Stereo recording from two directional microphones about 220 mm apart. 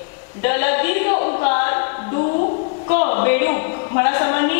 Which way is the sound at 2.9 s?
15° left (ahead or behind).